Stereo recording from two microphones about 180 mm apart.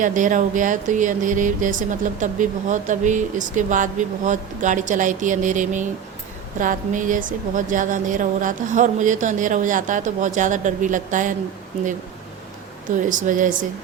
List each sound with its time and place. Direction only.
0.0 s a woman's voice: 45° right (ahead or behind)
13.1 s a woman's voice: 45° right (ahead or behind)